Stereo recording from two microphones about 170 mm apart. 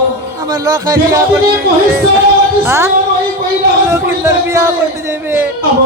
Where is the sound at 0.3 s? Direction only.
20° right (ahead or behind).